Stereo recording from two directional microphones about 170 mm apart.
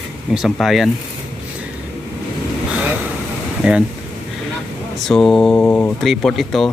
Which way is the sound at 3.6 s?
5° right (ahead or behind).